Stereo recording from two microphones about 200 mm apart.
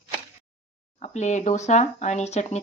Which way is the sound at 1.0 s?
35° left (ahead or behind).